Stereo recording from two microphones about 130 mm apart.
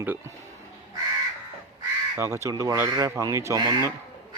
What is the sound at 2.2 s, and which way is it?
Speech, 20° right (ahead or behind).